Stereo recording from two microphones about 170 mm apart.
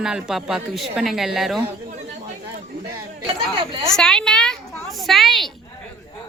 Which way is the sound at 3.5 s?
30° right (ahead or behind).